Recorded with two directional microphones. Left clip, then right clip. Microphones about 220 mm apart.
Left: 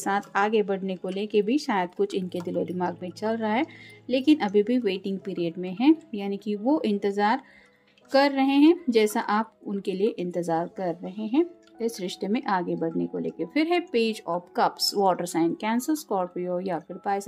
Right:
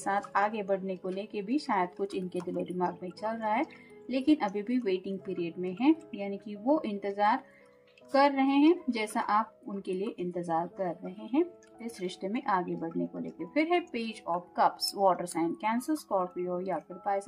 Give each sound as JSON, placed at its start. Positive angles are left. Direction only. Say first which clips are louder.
{"t": 0.0, "sound": "a woman's voice", "louder": "left 4 dB", "side_deg": 40}